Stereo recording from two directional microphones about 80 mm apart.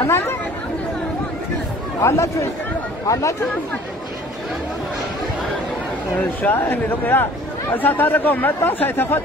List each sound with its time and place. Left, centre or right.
0.0 s speech: left
2.0 s speech: left
6.4 s speech: left